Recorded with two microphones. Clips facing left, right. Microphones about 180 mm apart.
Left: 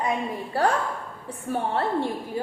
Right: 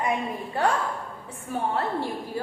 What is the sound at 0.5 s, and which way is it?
Speech, 35° left (ahead or behind).